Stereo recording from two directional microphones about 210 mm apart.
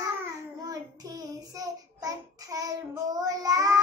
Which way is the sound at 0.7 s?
15° right (ahead or behind).